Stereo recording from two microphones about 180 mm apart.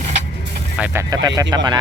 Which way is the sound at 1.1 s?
20° right (ahead or behind).